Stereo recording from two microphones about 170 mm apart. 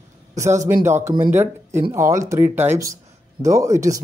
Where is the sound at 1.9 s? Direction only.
15° right (ahead or behind).